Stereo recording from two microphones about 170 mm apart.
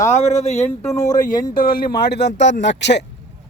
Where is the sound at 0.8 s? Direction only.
15° left (ahead or behind).